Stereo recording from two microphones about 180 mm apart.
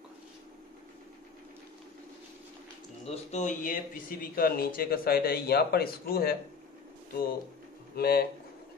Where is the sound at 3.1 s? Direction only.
40° left (ahead or behind); by 6.3 s 55° left (ahead or behind).